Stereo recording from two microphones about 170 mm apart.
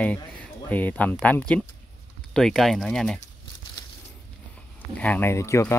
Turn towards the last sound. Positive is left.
turn(degrees=15)  # may be behind; listen again after turning